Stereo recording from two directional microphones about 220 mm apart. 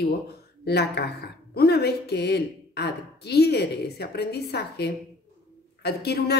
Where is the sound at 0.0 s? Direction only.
45° left (ahead or behind).